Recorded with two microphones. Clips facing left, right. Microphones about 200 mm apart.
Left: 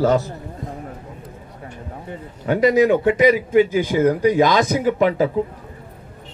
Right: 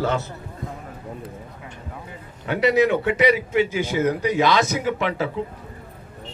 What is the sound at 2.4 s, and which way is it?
A man's voice, 40° left (ahead or behind).